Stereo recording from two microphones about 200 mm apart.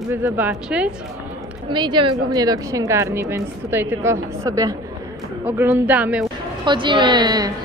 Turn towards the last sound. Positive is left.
turn(degrees=-20)  # may be behind; listen again after turning